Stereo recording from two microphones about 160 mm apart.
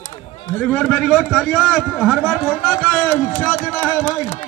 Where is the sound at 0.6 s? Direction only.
5° left (ahead or behind).